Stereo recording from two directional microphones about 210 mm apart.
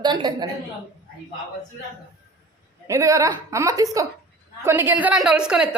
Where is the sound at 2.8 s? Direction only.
15° right (ahead or behind).